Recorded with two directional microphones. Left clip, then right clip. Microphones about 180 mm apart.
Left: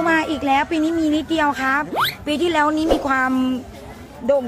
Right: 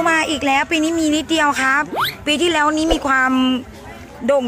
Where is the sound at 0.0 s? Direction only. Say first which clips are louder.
Right 2 dB; centre (ahead or behind).